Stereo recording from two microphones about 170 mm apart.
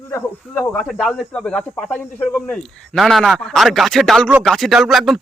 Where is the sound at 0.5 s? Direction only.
Centre (ahead or behind).